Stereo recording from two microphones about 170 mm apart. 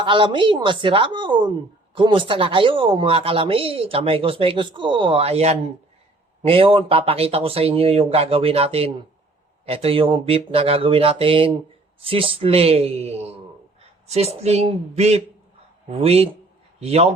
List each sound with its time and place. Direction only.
0.0 s a woman's voice: 30° right (ahead or behind)